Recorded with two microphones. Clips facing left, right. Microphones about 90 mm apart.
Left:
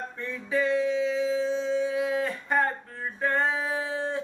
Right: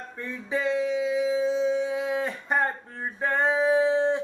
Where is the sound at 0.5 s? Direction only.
20° right (ahead or behind).